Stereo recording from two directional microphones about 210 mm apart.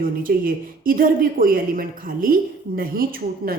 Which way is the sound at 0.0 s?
40° right (ahead or behind).